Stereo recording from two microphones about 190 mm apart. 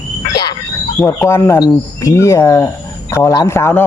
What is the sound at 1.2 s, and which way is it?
A man's voice, 15° left (ahead or behind).